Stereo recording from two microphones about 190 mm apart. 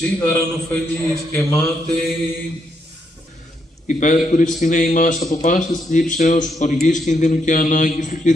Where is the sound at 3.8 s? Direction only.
40° left (ahead or behind).